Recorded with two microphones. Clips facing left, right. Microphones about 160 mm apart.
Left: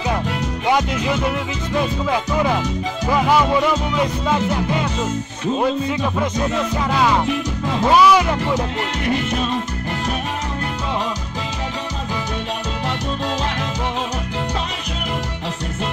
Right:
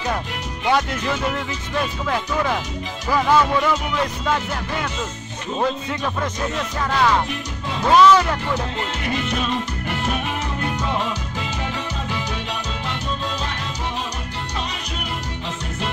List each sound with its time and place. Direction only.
0.7 s music: 15° left (ahead or behind)
7.9 s music: 10° left (ahead or behind)